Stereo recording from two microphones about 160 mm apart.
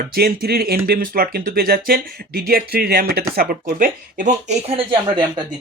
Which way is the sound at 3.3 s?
60° right (ahead or behind).